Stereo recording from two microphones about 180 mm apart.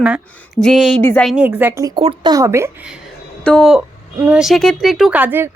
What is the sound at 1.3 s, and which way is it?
A woman's voice, 10° right (ahead or behind).